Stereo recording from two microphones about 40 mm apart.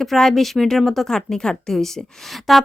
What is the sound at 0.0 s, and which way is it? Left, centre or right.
A woman's voice, centre.